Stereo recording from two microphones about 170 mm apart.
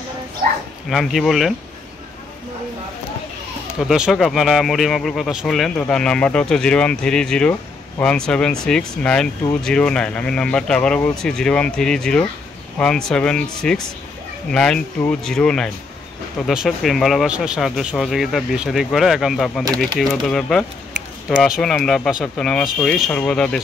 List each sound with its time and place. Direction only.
0.8 s speech: centre (ahead or behind)
3.8 s speech: 5° right (ahead or behind)
19.6 s speech: 25° right (ahead or behind)
20.2 s speech: 5° left (ahead or behind)